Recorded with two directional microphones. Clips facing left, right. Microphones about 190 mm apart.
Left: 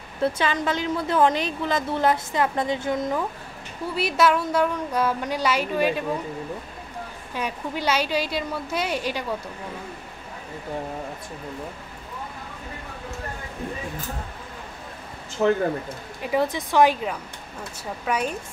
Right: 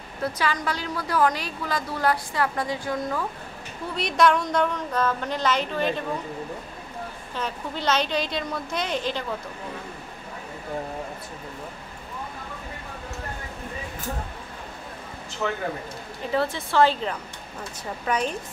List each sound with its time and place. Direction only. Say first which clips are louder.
0.2 s a woman's voice: left 3 dB; 25° left (ahead or behind)
3.9 s a woman's voice: even; 5° left (ahead or behind)
7.3 s a woman's voice: left 2 dB; 10° left (ahead or behind)
16.3 s a woman's voice: left 2 dB; 15° left (ahead or behind)